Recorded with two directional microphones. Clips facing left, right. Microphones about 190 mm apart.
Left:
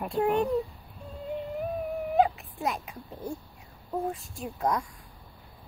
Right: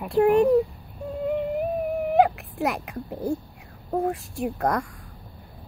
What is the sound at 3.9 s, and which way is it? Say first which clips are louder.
A woman's voice: right 6 dB; 65° right (ahead or behind).